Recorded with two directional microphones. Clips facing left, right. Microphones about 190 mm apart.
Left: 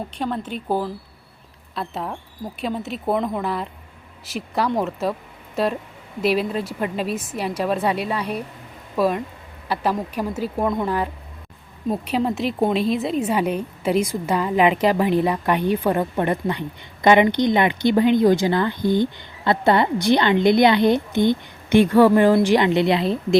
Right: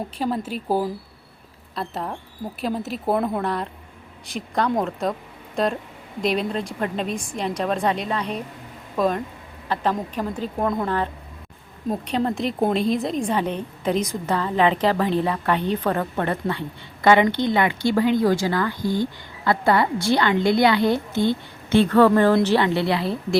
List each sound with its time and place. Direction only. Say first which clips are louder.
0.2 s a woman's voice: right 1 dB; 5° right (ahead or behind); by 23.4 s 20° left (ahead or behind)